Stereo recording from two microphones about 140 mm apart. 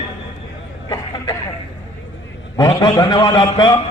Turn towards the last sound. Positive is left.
turn(degrees=30)  # may be behind; listen again after turning